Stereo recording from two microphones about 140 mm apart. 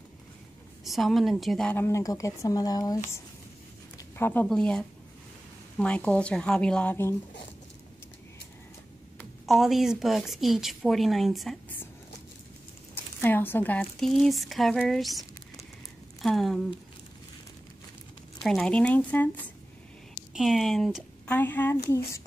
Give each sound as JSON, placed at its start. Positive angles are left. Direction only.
{"t": 0.8, "sound": "a woman's voice", "side_deg": 0}
{"t": 1.8, "sound": "speech", "side_deg": 20}
{"t": 4.2, "sound": "a woman's voice", "side_deg": 15}
{"t": 9.2, "sound": "a woman's voice", "side_deg": 0}
{"t": 12.9, "sound": "speech", "side_deg": 15}
{"t": 13.9, "sound": "a woman's voice", "side_deg": 0}
{"t": 18.4, "sound": "a woman's voice", "side_deg": 5}
{"t": 20.3, "sound": "a woman's voice", "side_deg": 0}
{"t": 21.3, "sound": "a woman's voice", "side_deg": 15}